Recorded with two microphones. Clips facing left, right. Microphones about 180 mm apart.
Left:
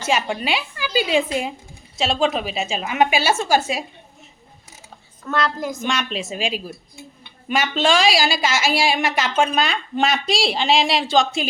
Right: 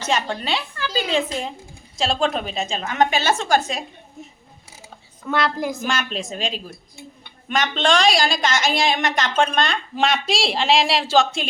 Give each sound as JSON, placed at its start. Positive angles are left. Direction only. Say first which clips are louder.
{"t": 0.0, "sound": "a woman's voice", "louder": "left 2 dB", "side_deg": 10}
{"t": 5.2, "sound": "a woman's voice", "louder": "right 1 dB", "side_deg": -10}